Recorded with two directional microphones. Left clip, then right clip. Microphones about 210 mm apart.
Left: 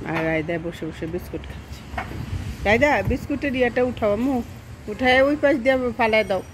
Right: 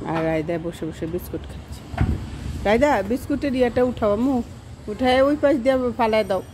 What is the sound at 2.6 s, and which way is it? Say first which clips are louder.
Speech: even; 10° right (ahead or behind).